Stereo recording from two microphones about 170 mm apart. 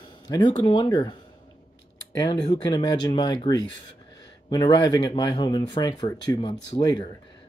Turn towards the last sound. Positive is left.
turn(degrees=25)  # may be behind; listen again after turning